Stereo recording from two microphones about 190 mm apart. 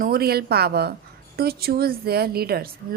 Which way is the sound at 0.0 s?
55° right (ahead or behind).